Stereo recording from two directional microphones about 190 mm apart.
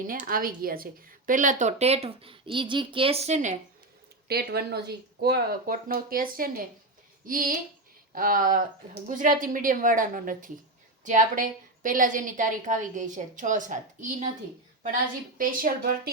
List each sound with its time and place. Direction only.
0.1 s a woman's voice: 50° right (ahead or behind)
4.3 s a woman's voice: 55° right (ahead or behind); by 14.3 s 40° right (ahead or behind)
15.4 s a woman's voice: 50° right (ahead or behind)